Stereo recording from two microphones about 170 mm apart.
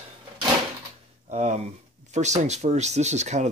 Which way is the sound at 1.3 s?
45° right (ahead or behind).